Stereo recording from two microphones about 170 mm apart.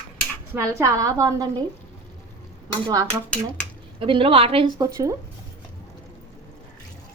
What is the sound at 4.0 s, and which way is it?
Speech, 30° right (ahead or behind).